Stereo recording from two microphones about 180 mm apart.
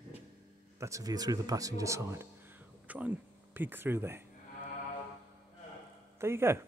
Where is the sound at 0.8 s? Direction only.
20° right (ahead or behind).